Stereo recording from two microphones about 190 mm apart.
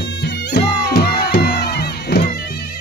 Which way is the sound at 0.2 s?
60° left (ahead or behind).